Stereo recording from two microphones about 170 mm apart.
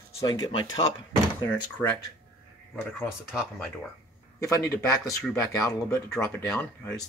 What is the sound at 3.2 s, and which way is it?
Speech, centre (ahead or behind).